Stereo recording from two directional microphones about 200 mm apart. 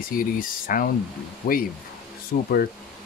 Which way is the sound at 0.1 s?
45° left (ahead or behind).